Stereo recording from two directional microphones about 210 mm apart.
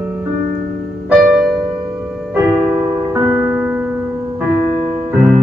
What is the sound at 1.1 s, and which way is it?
Music, 5° right (ahead or behind).